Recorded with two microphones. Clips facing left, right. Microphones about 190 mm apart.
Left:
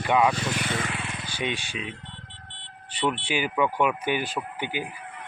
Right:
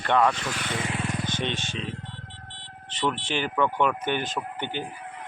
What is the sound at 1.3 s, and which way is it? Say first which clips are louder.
Speech: right 1 dB; 10° left (ahead or behind).